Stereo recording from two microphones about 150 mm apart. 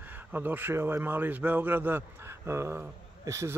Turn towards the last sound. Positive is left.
turn(degrees=-20)  # may be behind; listen again after turning